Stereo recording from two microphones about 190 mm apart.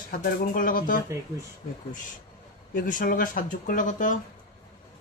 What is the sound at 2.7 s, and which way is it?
Speech, 45° left (ahead or behind).